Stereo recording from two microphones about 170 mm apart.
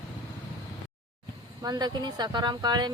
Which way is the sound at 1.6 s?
25° right (ahead or behind).